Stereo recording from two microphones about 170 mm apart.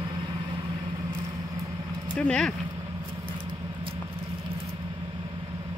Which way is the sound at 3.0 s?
30° right (ahead or behind).